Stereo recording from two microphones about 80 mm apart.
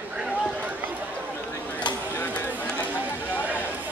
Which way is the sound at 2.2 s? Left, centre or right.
Centre.